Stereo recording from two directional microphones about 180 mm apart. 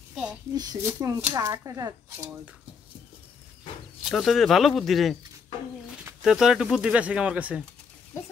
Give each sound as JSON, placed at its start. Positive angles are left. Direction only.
{"t": 0.1, "sound": "a sound", "side_deg": -5}
{"t": 0.6, "sound": "speech", "side_deg": -20}
{"t": 4.0, "sound": "speech", "side_deg": 0}